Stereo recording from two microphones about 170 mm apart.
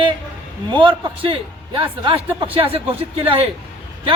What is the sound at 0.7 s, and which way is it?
A man's voice, 30° right (ahead or behind).